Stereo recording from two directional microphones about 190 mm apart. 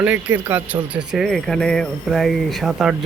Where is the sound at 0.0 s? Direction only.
10° right (ahead or behind).